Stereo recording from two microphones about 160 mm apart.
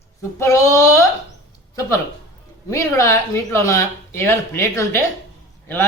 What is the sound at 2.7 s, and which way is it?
Speech, 20° left (ahead or behind).